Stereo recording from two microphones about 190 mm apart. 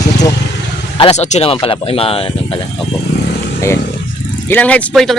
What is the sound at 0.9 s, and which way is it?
Speech, 30° left (ahead or behind).